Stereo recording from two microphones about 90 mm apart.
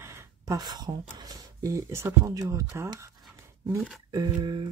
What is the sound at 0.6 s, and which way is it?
Speech, 50° right (ahead or behind).